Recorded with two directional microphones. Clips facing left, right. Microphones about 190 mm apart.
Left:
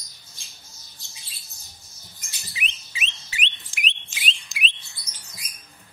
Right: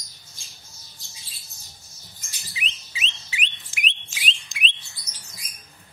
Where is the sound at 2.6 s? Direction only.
60° left (ahead or behind).